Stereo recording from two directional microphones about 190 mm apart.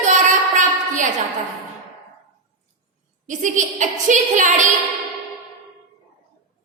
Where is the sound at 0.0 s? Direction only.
40° right (ahead or behind).